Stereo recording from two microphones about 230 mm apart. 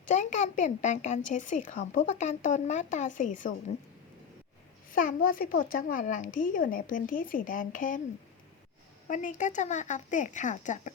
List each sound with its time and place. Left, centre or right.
0.1 s speech: left
4.9 s speech: left
9.0 s speech: left